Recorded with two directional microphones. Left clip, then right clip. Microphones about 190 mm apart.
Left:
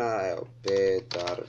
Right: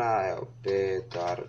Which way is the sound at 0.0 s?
35° left (ahead or behind).